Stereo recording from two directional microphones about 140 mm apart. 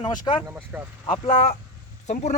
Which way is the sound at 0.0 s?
35° left (ahead or behind).